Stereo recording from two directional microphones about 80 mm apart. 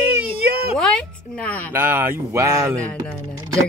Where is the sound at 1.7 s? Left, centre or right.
Right.